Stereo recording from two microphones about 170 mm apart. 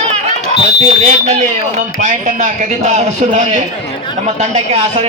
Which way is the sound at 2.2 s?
45° right (ahead or behind).